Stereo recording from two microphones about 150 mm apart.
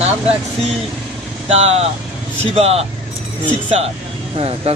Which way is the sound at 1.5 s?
45° right (ahead or behind).